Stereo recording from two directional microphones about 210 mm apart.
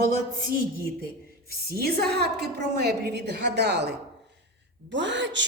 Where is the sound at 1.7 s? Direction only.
45° right (ahead or behind).